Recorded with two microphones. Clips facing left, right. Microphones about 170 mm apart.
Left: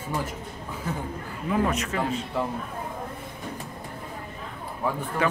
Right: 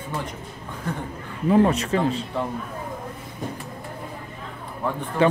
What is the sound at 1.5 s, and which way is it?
Speech, 30° right (ahead or behind).